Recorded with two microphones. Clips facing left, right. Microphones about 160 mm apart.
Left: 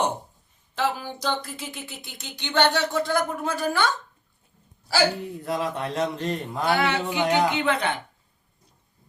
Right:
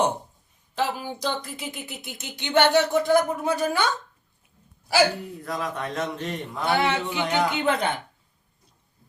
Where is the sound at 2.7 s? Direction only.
20° right (ahead or behind).